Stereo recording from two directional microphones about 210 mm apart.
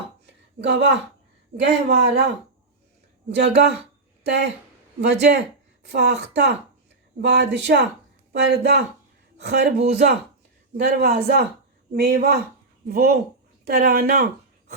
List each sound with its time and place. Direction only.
0.6 s a man's voice: 55° right (ahead or behind)
3.2 s a man's voice: 55° right (ahead or behind)
4.9 s a man's voice: 55° right (ahead or behind)
10.8 s a man's voice: 50° right (ahead or behind)